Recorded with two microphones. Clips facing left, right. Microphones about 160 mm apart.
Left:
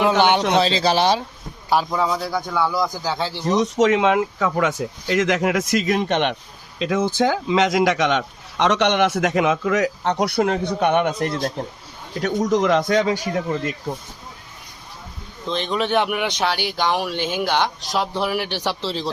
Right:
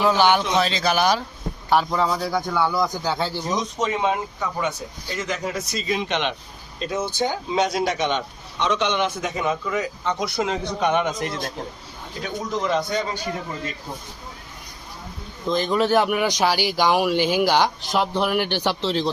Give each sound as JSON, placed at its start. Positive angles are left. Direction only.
{"t": 0.2, "sound": "speech", "side_deg": 20}
{"t": 1.7, "sound": "a man's voice", "side_deg": 10}
{"t": 3.5, "sound": "speech", "side_deg": 80}
{"t": 6.0, "sound": "speech", "side_deg": 55}
{"t": 6.7, "sound": "speech", "side_deg": 90}
{"t": 12.2, "sound": "speech", "side_deg": 85}
{"t": 15.4, "sound": "a man's voice", "side_deg": -5}